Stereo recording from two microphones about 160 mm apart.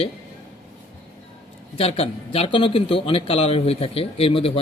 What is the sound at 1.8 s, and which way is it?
Speech, 40° left (ahead or behind).